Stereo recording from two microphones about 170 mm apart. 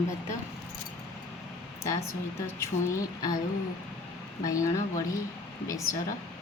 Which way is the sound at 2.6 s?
20° left (ahead or behind).